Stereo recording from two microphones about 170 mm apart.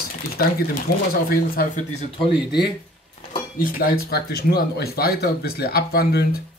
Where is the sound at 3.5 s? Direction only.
60° left (ahead or behind).